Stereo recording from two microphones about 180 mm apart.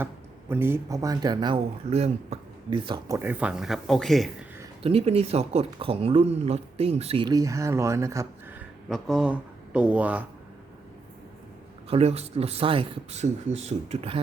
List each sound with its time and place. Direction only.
0.0 s speech: 15° right (ahead or behind)
3.2 s speech: 10° right (ahead or behind)
4.8 s speech: 35° right (ahead or behind)
7.3 s speech: 20° right (ahead or behind)
8.9 s speech: centre (ahead or behind)
11.9 s speech: 35° right (ahead or behind)